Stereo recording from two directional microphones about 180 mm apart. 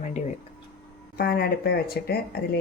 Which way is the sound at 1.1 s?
60° left (ahead or behind).